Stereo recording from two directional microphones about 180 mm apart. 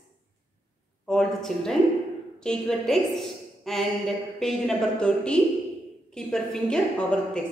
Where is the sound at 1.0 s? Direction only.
5° left (ahead or behind).